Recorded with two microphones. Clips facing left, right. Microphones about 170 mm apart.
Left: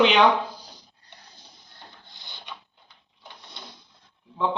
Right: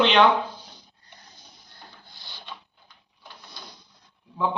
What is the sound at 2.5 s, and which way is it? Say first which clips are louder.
Printer: even; 15° left (ahead or behind).